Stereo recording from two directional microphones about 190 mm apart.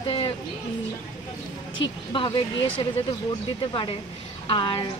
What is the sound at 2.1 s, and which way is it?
Speech, 25° left (ahead or behind).